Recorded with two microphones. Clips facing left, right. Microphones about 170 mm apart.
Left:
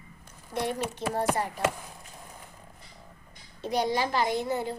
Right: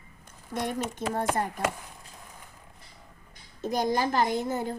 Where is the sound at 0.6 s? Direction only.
50° right (ahead or behind).